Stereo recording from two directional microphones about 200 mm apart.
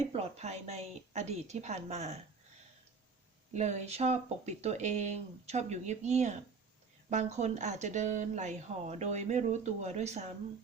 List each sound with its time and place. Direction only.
0.1 s speech: 35° right (ahead or behind)
3.5 s speech: 35° right (ahead or behind)